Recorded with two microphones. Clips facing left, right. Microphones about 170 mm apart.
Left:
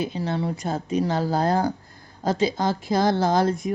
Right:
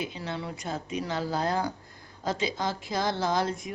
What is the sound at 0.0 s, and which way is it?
Speech, 35° left (ahead or behind).